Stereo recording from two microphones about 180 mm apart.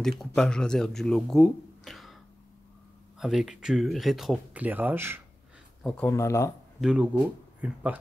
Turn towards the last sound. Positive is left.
turn(degrees=-10)  # may be behind; listen again after turning